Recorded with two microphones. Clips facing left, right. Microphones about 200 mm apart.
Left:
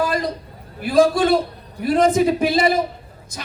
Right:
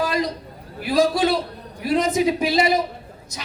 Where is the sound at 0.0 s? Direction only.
50° left (ahead or behind).